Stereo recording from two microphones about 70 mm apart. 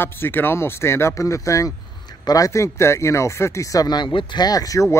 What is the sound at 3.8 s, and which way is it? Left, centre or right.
Speech, left.